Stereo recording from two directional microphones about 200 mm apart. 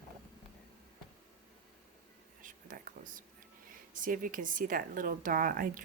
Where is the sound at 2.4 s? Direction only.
45° right (ahead or behind).